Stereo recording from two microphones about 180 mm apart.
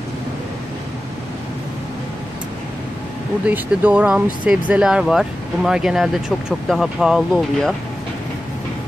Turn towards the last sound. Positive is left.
turn(degrees=0)  # may be behind; listen again after turning